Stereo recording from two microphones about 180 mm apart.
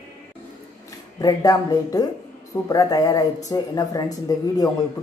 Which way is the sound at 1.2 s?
20° left (ahead or behind).